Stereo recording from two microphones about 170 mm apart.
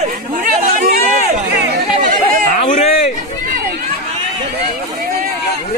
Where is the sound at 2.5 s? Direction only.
45° left (ahead or behind).